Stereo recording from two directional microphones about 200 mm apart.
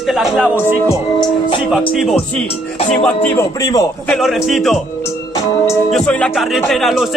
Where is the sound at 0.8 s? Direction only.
20° left (ahead or behind).